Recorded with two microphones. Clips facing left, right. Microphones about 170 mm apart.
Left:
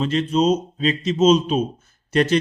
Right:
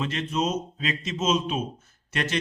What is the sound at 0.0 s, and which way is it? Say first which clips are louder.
Speech: left 8 dB; 30° left (ahead or behind).